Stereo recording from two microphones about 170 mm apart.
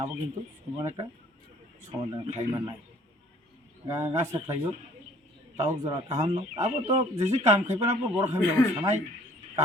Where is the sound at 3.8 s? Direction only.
15° right (ahead or behind).